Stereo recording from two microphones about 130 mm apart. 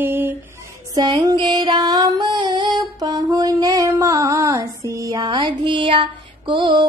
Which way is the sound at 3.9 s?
25° right (ahead or behind).